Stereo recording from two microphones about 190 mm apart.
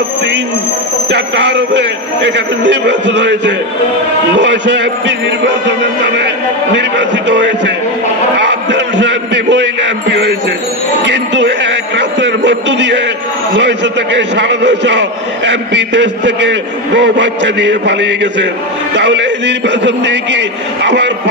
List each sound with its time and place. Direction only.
1.1 s a man's voice: 70° right (ahead or behind)
8.5 s a sound: 70° right (ahead or behind)
13.6 s a man's voice: 65° right (ahead or behind)